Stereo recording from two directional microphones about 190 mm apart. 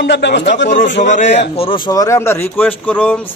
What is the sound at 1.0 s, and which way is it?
Speech, 40° left (ahead or behind).